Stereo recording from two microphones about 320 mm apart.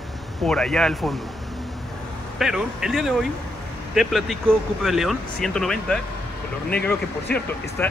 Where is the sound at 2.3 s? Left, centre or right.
Centre.